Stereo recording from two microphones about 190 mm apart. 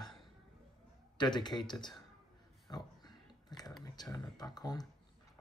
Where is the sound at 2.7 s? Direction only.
20° left (ahead or behind).